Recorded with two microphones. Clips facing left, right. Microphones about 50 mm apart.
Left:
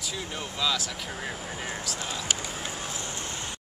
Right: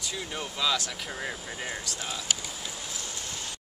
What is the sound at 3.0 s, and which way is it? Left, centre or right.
Vehicle, left.